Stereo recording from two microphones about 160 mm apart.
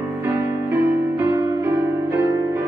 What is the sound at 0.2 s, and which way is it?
Music, 15° right (ahead or behind).